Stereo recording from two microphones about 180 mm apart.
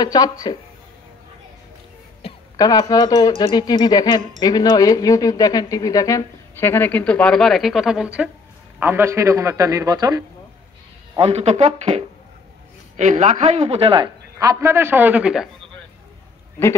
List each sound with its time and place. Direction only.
0.0 s speech: 20° left (ahead or behind)
2.5 s speech: 20° left (ahead or behind); by 10.2 s 20° right (ahead or behind)
11.1 s a woman's voice: 35° right (ahead or behind); by 15.4 s 5° right (ahead or behind)